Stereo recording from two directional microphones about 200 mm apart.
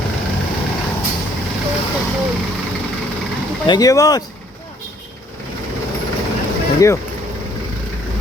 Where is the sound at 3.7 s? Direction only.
20° left (ahead or behind).